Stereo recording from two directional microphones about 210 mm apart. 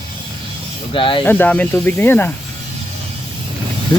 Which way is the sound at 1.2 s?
10° left (ahead or behind).